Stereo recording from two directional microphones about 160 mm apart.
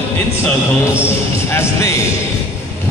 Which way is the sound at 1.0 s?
15° left (ahead or behind).